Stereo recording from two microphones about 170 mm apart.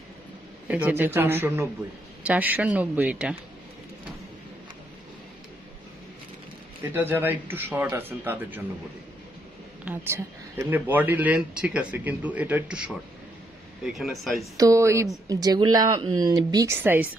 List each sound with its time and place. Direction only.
0.7 s speech: 10° right (ahead or behind)
6.9 s speech: 10° right (ahead or behind)
9.8 s speech: 15° right (ahead or behind)
14.6 s speech: 20° right (ahead or behind)